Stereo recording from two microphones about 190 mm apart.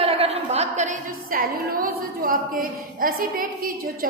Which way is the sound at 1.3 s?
50° right (ahead or behind).